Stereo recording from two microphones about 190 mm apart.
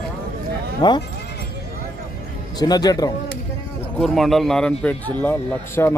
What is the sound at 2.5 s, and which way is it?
Speech, 20° left (ahead or behind).